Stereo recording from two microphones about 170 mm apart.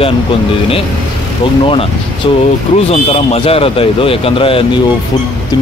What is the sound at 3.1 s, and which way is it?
Speech, 35° left (ahead or behind).